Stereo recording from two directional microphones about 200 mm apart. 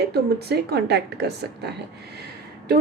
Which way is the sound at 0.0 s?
55° right (ahead or behind).